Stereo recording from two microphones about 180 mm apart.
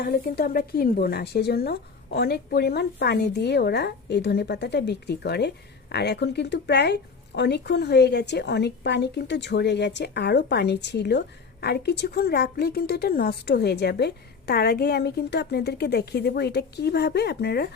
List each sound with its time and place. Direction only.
0.0 s a woman's voice: 60° left (ahead or behind)